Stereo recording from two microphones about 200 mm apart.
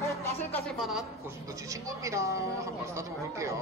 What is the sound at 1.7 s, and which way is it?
Speech, 15° right (ahead or behind).